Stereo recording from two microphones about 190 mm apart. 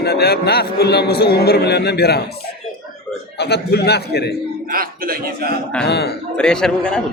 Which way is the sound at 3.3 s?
60° left (ahead or behind).